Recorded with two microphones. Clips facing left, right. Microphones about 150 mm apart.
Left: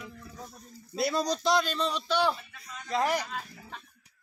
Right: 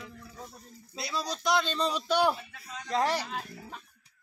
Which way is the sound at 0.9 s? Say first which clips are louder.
Left 7 dB; 50° left (ahead or behind).